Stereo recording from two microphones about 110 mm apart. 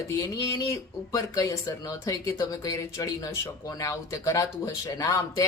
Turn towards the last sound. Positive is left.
turn(degrees=25)  # may be behind; listen again after turning